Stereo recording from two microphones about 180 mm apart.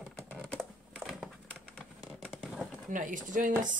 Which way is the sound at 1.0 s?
Centre (ahead or behind).